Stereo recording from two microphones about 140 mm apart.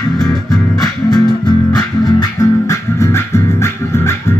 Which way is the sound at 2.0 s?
25° left (ahead or behind).